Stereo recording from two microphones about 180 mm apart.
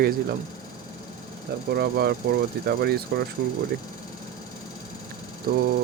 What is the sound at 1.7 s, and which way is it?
Speech, 60° right (ahead or behind).